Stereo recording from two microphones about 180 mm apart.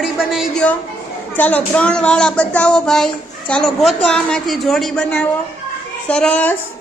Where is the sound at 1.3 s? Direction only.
10° left (ahead or behind).